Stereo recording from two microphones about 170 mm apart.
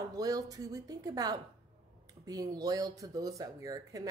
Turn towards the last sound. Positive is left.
turn(degrees=-20)  # may be behind; listen again after turning